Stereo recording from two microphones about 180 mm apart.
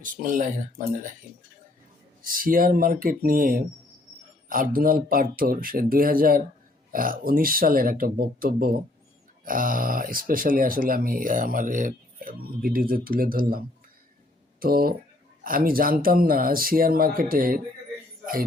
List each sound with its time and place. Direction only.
0.0 s speech: 45° right (ahead or behind)
2.2 s speech: 50° right (ahead or behind)